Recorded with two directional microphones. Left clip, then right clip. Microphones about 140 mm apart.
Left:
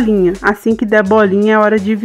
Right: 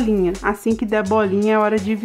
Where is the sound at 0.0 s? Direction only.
25° left (ahead or behind).